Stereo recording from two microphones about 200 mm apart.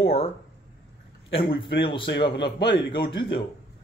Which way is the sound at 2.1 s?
60° left (ahead or behind).